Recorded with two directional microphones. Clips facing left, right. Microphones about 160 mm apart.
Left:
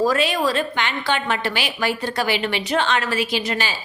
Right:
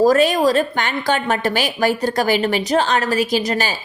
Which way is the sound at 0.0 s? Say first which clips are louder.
Right 6 dB; 45° right (ahead or behind).